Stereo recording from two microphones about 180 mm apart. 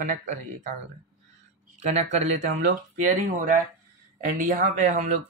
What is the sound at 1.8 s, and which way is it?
Speech, 40° right (ahead or behind).